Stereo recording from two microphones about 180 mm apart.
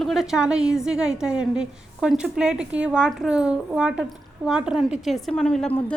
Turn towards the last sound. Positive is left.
turn(degrees=5)  # may be behind; listen again after turning